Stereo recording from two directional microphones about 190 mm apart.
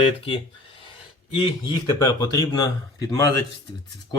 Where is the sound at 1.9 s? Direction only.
20° left (ahead or behind).